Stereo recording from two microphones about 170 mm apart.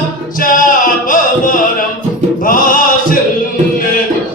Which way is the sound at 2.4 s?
50° left (ahead or behind).